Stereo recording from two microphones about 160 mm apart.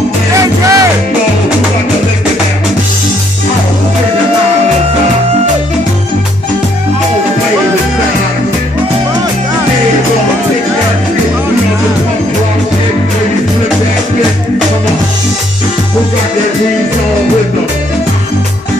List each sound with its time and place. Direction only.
0.4 s music: 20° right (ahead or behind)